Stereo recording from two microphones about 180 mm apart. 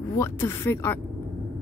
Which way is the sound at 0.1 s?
15° left (ahead or behind).